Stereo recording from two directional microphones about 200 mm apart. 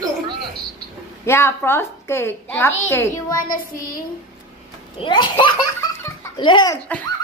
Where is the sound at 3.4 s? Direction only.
45° left (ahead or behind).